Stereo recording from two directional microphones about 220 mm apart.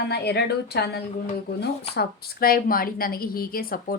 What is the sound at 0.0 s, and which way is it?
A woman's voice, 50° left (ahead or behind).